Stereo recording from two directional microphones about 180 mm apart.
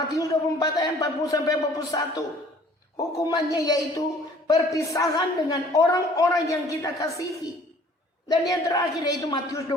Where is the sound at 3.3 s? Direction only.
20° left (ahead or behind).